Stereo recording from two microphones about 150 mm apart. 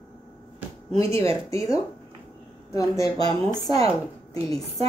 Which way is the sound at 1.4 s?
20° left (ahead or behind).